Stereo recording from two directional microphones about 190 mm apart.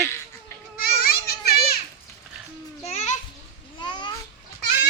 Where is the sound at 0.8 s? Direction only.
55° left (ahead or behind).